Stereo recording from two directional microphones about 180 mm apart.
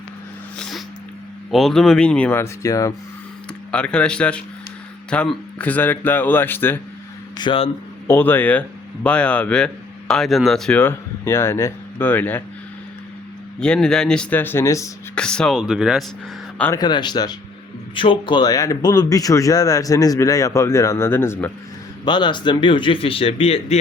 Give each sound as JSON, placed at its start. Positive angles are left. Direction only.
{"t": 1.5, "sound": "speech", "side_deg": 0}
{"t": 3.7, "sound": "speech", "side_deg": 5}
{"t": 7.3, "sound": "speech", "side_deg": 30}
{"t": 8.0, "sound": "a man's voice", "side_deg": 10}
{"t": 13.6, "sound": "speech", "side_deg": 5}
{"t": 15.1, "sound": "speech", "side_deg": 5}
{"t": 16.7, "sound": "speech", "side_deg": 25}
{"t": 22.0, "sound": "speech", "side_deg": 25}